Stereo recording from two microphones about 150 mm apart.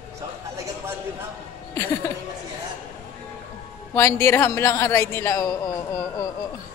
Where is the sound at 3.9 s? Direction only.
15° left (ahead or behind).